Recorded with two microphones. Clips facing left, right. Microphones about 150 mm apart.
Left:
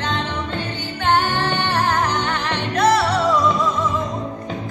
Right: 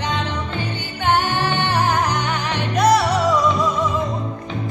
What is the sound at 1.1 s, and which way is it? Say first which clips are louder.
Music: even; 10° right (ahead or behind).